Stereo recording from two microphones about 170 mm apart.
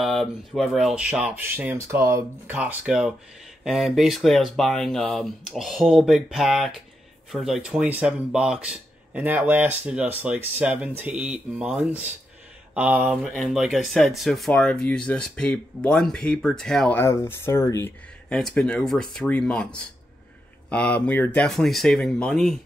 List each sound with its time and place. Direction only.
0.0 s speech: centre (ahead or behind)
17.0 s speech: 15° left (ahead or behind)
18.3 s speech: centre (ahead or behind)